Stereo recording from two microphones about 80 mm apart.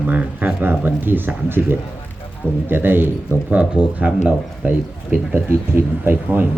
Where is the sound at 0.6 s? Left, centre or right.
Right.